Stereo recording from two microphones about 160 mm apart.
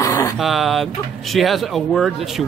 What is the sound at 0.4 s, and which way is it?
Speech, centre (ahead or behind).